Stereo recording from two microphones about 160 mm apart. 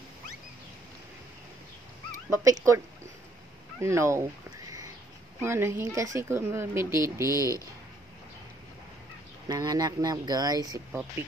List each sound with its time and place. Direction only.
2.2 s speech: 20° right (ahead or behind)
3.8 s speech: 20° right (ahead or behind)
9.5 s speech: 25° right (ahead or behind)